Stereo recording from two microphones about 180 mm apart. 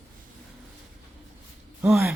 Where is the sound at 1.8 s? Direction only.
5° right (ahead or behind).